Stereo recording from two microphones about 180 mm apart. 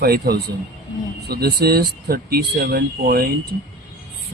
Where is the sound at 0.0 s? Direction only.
60° right (ahead or behind).